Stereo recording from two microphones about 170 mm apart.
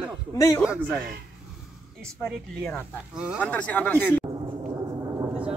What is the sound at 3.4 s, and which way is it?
Speech, 10° left (ahead or behind).